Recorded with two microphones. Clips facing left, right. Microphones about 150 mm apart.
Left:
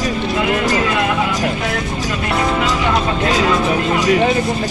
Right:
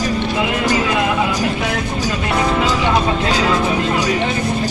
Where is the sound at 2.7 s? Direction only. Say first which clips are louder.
Right 1 dB; 10° right (ahead or behind).